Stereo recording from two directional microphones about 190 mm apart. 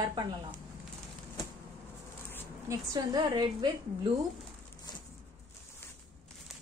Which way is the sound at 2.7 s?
20° right (ahead or behind).